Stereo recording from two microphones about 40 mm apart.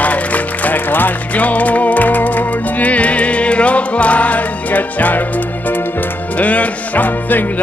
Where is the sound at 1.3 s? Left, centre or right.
Left.